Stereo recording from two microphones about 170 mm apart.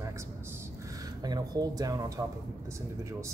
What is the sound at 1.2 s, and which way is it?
Speech, 25° right (ahead or behind).